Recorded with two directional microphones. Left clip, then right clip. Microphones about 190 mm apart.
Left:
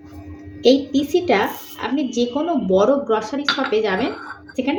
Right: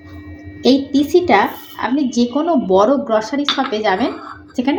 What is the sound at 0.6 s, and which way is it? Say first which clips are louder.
A woman's voice: right 1 dB; 30° right (ahead or behind).